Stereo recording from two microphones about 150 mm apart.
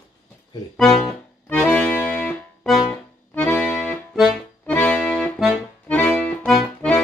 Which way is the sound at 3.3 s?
10° left (ahead or behind).